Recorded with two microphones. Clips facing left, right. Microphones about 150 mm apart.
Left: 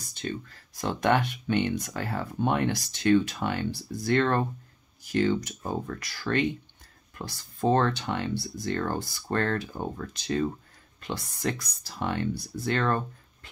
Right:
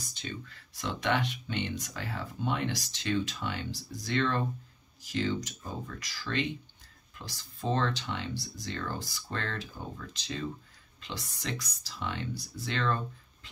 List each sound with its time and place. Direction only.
0.1 s speech: 50° left (ahead or behind)